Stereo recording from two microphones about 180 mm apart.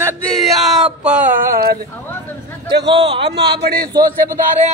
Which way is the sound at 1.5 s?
60° right (ahead or behind).